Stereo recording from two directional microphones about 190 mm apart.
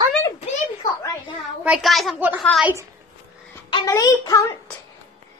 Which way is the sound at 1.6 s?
Centre (ahead or behind).